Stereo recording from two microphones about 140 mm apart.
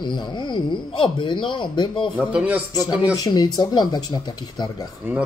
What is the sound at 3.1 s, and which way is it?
Speech, 25° left (ahead or behind).